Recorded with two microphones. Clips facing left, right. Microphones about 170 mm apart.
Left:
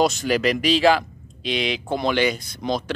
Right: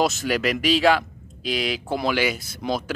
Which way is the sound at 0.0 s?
Centre (ahead or behind).